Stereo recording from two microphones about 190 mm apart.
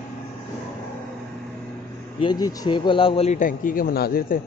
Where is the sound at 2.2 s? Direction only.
20° left (ahead or behind); by 4.3 s 50° left (ahead or behind).